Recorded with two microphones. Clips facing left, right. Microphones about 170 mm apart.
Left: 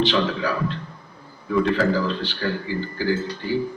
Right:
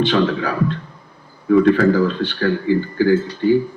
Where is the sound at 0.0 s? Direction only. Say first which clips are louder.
Right 4 dB; 55° right (ahead or behind).